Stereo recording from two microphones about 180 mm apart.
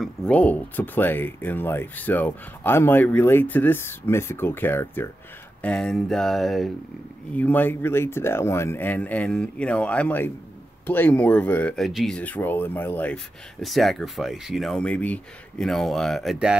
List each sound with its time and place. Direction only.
0.0 s speech: 5° left (ahead or behind)